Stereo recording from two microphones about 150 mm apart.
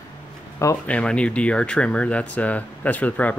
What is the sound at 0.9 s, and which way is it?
Speech, 5° left (ahead or behind).